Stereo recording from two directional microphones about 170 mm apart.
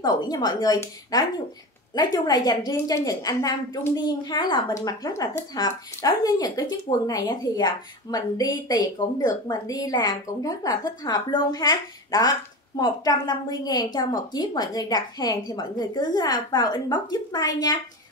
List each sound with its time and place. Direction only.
0.0 s a woman's voice: 25° left (ahead or behind)